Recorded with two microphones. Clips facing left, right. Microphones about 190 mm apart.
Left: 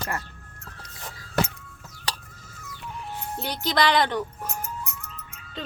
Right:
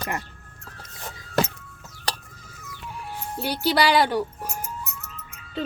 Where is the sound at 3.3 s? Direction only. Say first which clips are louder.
Right 3 dB; 10° right (ahead or behind).